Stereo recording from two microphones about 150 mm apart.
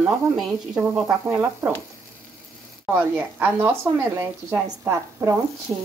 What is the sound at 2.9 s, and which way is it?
Speech, 15° right (ahead or behind).